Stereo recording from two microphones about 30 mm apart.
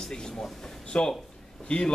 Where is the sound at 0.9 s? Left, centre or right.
Left.